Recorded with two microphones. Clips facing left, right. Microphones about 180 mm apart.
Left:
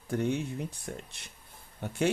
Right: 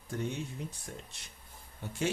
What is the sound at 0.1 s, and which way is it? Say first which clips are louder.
Speech: left 7 dB; 60° left (ahead or behind).